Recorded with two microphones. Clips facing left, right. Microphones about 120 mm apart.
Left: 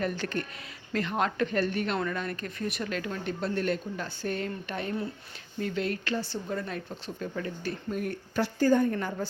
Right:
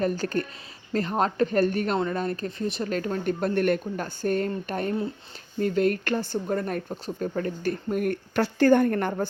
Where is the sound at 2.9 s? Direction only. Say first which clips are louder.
Right 6 dB; 40° right (ahead or behind).